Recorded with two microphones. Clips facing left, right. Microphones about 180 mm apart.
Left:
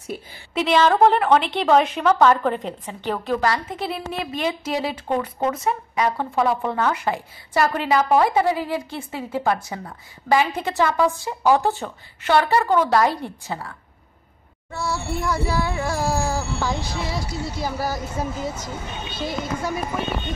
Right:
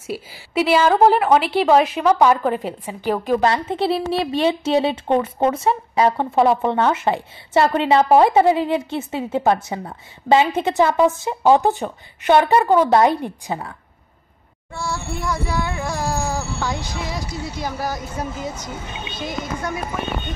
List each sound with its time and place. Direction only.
0.3 s a woman's voice: 5° right (ahead or behind)
3.4 s a woman's voice: 25° right (ahead or behind)
14.7 s speech: 5° left (ahead or behind)